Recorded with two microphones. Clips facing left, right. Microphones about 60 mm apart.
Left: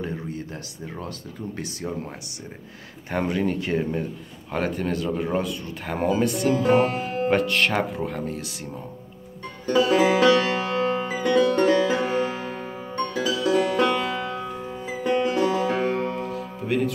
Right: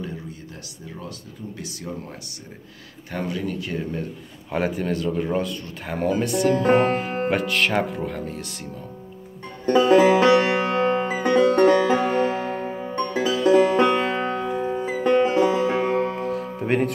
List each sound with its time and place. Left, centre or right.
3.1 s speech: left
4.5 s speech: centre
6.6 s music: right
7.2 s speech: centre
9.7 s music: right
15.2 s music: right
16.2 s music: right